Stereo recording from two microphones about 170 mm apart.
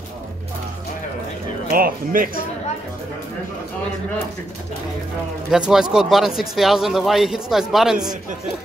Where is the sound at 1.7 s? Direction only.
55° right (ahead or behind).